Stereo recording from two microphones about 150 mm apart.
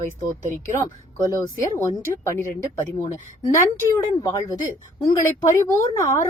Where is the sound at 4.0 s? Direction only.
30° left (ahead or behind).